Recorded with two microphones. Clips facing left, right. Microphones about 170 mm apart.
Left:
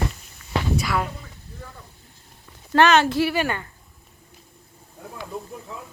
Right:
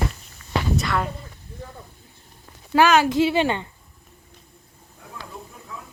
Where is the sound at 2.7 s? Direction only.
10° right (ahead or behind).